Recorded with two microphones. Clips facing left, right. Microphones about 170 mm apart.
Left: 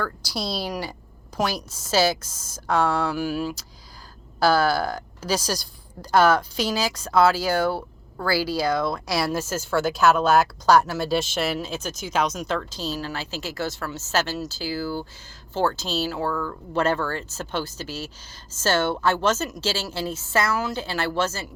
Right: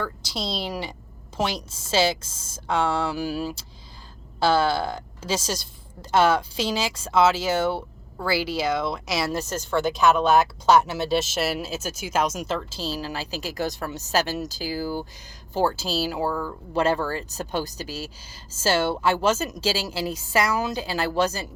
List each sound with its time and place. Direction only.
0.0 s a woman's voice: 20° right (ahead or behind)
9.3 s speech: 5° left (ahead or behind)
12.8 s speech: 35° right (ahead or behind)
13.1 s a woman's voice: 15° right (ahead or behind)
15.9 s speech: 35° right (ahead or behind)
16.2 s speech: 25° right (ahead or behind)
18.3 s a woman's voice: 10° right (ahead or behind)